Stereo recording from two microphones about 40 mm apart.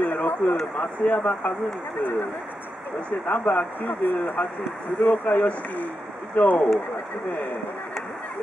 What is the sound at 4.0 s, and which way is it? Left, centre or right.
Speech, left.